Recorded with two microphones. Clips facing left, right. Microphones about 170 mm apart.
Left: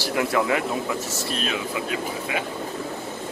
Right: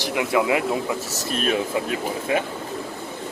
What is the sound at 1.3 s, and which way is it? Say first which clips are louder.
Speech: right 6 dB; 50° right (ahead or behind).